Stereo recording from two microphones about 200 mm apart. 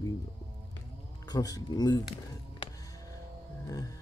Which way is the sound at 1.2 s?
20° left (ahead or behind).